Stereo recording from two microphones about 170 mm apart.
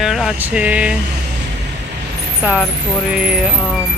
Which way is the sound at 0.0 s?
Centre (ahead or behind).